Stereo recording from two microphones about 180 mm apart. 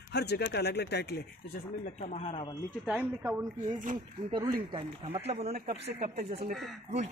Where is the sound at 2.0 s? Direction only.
35° left (ahead or behind).